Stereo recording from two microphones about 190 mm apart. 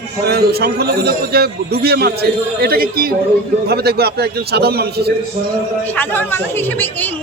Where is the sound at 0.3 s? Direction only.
55° right (ahead or behind).